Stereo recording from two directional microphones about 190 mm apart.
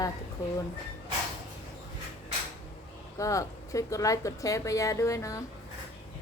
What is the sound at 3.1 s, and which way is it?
A woman's voice, 15° left (ahead or behind).